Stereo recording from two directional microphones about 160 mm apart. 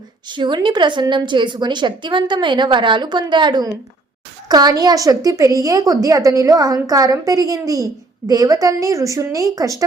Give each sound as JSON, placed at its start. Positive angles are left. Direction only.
{"t": 0.3, "sound": "a woman's voice", "side_deg": -30}